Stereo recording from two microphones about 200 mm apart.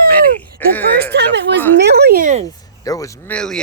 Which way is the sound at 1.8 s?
55° right (ahead or behind).